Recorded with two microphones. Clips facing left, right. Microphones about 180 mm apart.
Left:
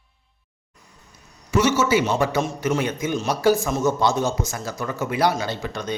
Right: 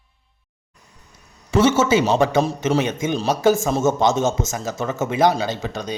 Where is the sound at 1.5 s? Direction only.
30° right (ahead or behind).